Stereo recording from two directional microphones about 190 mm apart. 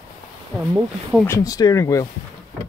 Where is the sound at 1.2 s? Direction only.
15° left (ahead or behind).